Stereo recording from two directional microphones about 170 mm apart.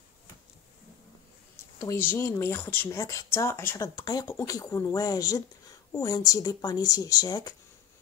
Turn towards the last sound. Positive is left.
turn(degrees=20)  # may be behind; listen again after turning